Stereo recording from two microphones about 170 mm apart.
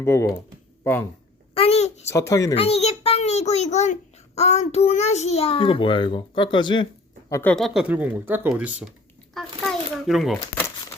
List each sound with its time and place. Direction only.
0.0 s speech: 15° left (ahead or behind)
1.5 s a sound: 35° left (ahead or behind)
2.0 s speech: 15° left (ahead or behind)
2.6 s a child's voice: 40° left (ahead or behind); by 7.5 s 20° left (ahead or behind)
7.5 s speech: centre (ahead or behind)
9.3 s crumpling: centre (ahead or behind)